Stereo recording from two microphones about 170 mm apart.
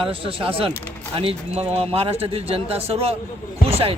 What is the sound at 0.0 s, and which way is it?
A man's voice, 30° right (ahead or behind).